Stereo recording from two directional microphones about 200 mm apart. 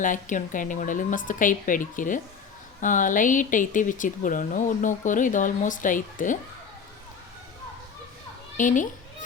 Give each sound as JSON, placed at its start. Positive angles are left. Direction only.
{"t": 0.0, "sound": "speech", "side_deg": 40}
{"t": 8.5, "sound": "speech", "side_deg": 40}